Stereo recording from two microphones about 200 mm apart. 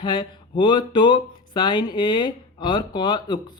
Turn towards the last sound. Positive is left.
turn(degrees=25)  # may be behind; listen again after turning